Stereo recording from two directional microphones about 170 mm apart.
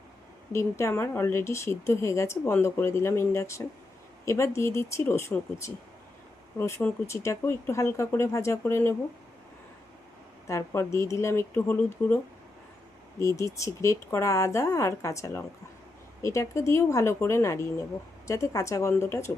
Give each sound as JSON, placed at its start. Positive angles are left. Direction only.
{"t": 0.5, "sound": "speech", "side_deg": 15}
{"t": 6.6, "sound": "speech", "side_deg": 15}
{"t": 10.4, "sound": "speech", "side_deg": 15}